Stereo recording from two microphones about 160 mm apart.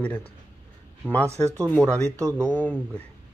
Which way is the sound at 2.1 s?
20° right (ahead or behind).